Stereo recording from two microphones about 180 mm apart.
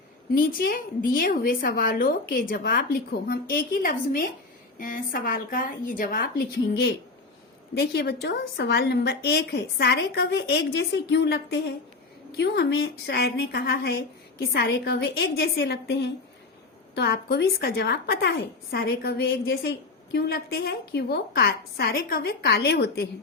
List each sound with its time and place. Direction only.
0.3 s a woman's voice: 55° left (ahead or behind)